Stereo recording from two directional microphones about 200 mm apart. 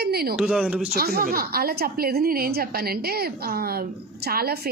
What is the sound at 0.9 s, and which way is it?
A woman's voice, 50° right (ahead or behind).